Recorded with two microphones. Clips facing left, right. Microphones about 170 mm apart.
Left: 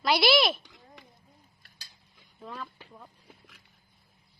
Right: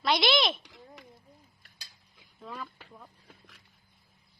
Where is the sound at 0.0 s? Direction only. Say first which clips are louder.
Left 3 dB; 5° left (ahead or behind).